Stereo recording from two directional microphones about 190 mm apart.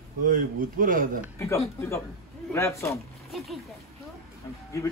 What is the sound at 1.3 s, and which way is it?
Speech, 15° left (ahead or behind).